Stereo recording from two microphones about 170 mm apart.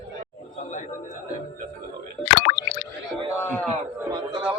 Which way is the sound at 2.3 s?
55° left (ahead or behind).